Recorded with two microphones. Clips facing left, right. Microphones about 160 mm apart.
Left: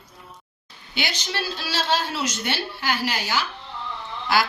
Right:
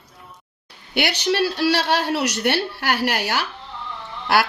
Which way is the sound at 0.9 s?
65° right (ahead or behind).